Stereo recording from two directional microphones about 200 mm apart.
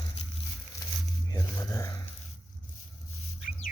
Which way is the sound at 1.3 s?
15° left (ahead or behind).